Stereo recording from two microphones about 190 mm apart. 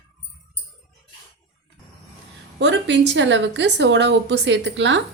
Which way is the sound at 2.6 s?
70° right (ahead or behind).